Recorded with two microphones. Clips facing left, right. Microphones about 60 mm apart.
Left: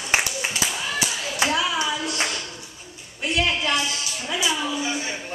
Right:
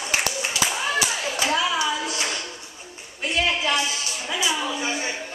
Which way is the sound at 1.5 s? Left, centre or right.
Centre.